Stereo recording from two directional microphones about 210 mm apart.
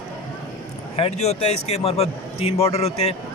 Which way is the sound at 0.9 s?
30° left (ahead or behind).